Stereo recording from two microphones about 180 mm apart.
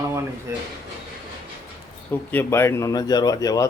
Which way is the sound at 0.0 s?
15° right (ahead or behind).